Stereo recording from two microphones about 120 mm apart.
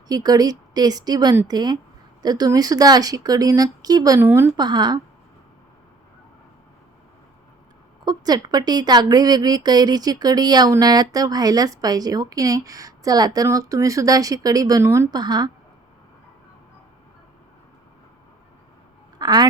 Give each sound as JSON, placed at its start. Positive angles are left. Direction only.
{"t": 0.1, "sound": "a woman's voice", "side_deg": -30}
{"t": 4.2, "sound": "a woman's voice", "side_deg": -20}
{"t": 4.5, "sound": "a woman's voice", "side_deg": -40}
{"t": 8.0, "sound": "a woman's voice", "side_deg": -35}
{"t": 15.1, "sound": "a woman's voice", "side_deg": -35}
{"t": 19.2, "sound": "a woman's voice", "side_deg": -35}